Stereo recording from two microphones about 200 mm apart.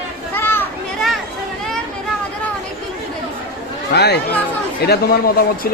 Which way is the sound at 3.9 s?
55° left (ahead or behind).